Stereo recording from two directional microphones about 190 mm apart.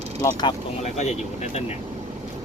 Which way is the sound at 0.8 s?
40° left (ahead or behind).